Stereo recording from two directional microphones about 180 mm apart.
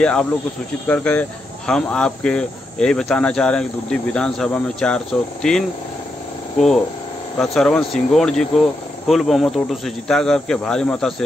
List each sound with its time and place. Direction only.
0.0 s speech: 5° left (ahead or behind)
7.3 s speech: 5° left (ahead or behind)